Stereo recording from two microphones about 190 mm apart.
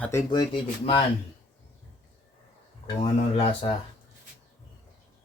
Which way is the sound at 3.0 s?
30° left (ahead or behind).